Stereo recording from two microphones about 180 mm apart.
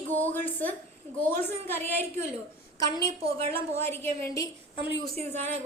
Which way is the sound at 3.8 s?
15° left (ahead or behind).